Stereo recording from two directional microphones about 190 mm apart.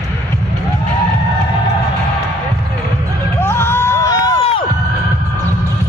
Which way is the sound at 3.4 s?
10° left (ahead or behind).